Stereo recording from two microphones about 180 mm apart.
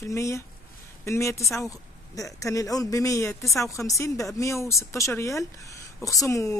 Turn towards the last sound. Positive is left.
turn(degrees=15)  # may be behind; listen again after turning